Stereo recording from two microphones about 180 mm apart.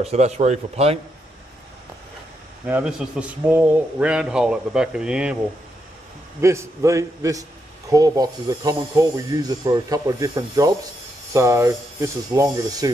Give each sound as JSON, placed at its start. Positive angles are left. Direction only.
{"t": 0.0, "sound": "speech", "side_deg": -40}
{"t": 2.6, "sound": "a man's voice", "side_deg": -5}
{"t": 6.4, "sound": "speech", "side_deg": -15}